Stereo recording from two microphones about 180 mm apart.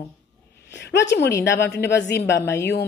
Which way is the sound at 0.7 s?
70° left (ahead or behind).